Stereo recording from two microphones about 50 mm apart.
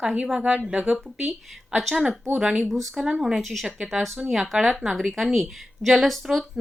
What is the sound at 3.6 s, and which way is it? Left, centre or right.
A woman's voice, centre.